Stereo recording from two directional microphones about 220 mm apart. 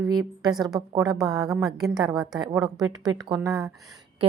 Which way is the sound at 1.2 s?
15° right (ahead or behind).